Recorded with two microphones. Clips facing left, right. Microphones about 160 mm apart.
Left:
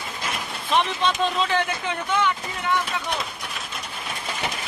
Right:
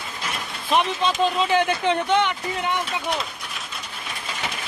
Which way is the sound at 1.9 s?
30° right (ahead or behind).